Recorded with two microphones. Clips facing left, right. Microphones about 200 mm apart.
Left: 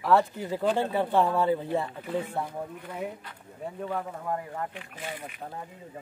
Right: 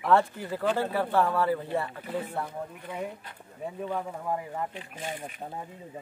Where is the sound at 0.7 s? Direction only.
20° left (ahead or behind).